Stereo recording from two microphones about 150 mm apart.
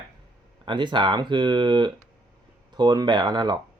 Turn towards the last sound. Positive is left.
turn(degrees=-30)  # may be behind; listen again after turning